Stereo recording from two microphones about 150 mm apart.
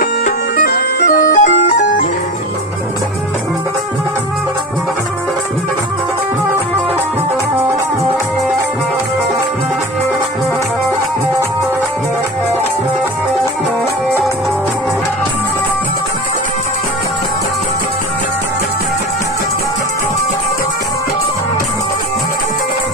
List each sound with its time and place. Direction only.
0.0 s music: 65° left (ahead or behind)